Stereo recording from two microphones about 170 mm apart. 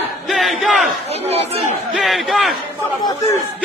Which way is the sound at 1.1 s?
40° right (ahead or behind).